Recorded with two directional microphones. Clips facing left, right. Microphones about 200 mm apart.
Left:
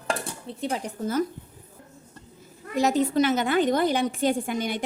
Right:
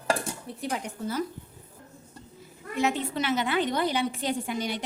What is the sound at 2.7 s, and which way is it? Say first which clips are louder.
A woman's voice: left 6 dB; 40° left (ahead or behind).